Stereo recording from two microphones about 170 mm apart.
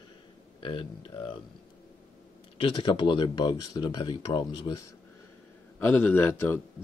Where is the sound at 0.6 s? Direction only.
30° left (ahead or behind).